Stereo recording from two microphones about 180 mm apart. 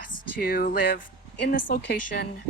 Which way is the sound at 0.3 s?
55° left (ahead or behind).